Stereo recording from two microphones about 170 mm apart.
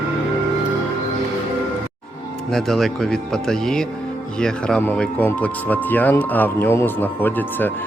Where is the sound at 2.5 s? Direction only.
Centre (ahead or behind).